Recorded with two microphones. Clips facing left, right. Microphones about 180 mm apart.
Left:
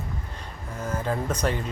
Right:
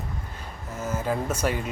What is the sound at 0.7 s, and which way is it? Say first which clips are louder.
Speech: right 1 dB; 5° right (ahead or behind).